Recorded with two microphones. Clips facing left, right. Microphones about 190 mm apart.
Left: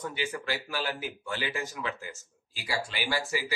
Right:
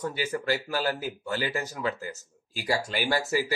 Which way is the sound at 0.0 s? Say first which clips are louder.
Right 4 dB; 40° right (ahead or behind).